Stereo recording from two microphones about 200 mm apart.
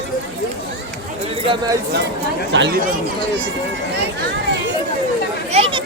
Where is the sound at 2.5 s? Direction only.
60° right (ahead or behind).